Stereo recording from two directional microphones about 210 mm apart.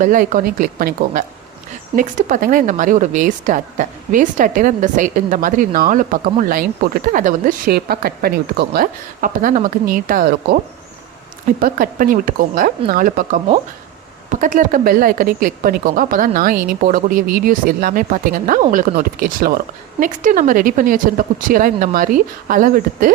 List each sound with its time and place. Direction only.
0.0 s speech: 40° right (ahead or behind)
11.6 s speech: 40° right (ahead or behind)